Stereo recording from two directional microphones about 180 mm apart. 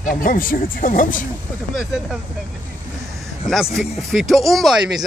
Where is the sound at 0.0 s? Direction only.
50° left (ahead or behind).